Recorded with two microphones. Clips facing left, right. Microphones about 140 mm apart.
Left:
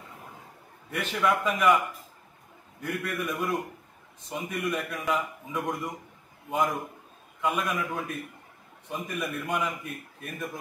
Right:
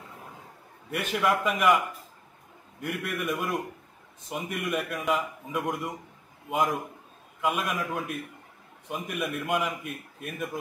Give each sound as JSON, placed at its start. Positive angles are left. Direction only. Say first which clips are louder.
{"t": 0.9, "sound": "a man's voice", "louder": "even", "side_deg": -5}
{"t": 2.8, "sound": "a man's voice", "louder": "even", "side_deg": -5}